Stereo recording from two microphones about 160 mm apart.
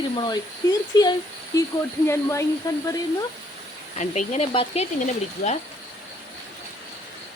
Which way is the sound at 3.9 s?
45° left (ahead or behind).